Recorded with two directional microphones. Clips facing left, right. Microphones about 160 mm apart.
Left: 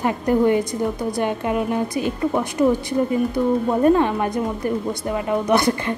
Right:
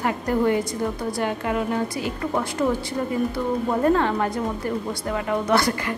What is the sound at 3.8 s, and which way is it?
A woman's voice, 15° left (ahead or behind).